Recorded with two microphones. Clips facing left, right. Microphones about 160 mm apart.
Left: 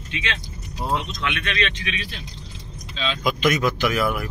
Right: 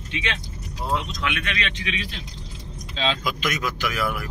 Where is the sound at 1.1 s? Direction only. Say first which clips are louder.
Left 1 dB; 10° right (ahead or behind).